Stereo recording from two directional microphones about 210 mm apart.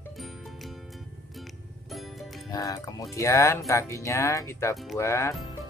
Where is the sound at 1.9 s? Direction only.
Centre (ahead or behind).